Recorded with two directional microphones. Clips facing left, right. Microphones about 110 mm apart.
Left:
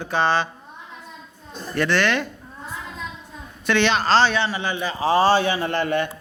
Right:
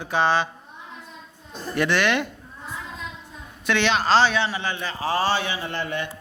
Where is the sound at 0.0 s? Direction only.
10° right (ahead or behind).